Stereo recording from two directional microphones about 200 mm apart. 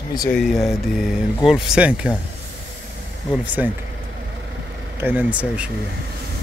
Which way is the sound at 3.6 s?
5° right (ahead or behind).